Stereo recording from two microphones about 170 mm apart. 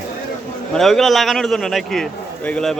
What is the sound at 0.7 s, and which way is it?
A man's voice, centre (ahead or behind).